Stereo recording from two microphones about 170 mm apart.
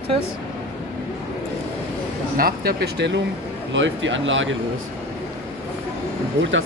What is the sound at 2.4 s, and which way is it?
Speech, 65° right (ahead or behind).